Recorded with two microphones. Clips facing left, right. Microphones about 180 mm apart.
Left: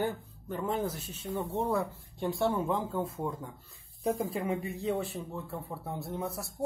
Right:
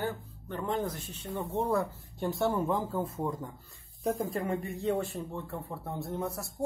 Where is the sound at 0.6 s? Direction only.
5° left (ahead or behind).